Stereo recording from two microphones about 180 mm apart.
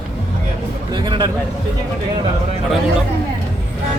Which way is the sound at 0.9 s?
25° right (ahead or behind).